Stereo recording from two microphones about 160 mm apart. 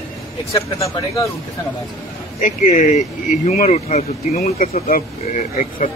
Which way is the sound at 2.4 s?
45° left (ahead or behind).